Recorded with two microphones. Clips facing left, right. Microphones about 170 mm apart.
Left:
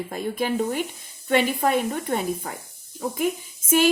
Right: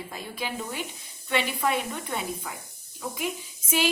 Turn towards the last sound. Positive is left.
turn(degrees=50)  # may be behind; listen again after turning